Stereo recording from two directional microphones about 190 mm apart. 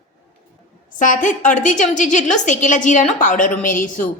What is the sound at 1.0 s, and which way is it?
A woman's voice, 45° left (ahead or behind).